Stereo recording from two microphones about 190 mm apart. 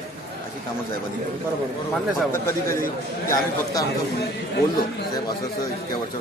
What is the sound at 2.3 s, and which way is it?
Speech, 15° left (ahead or behind).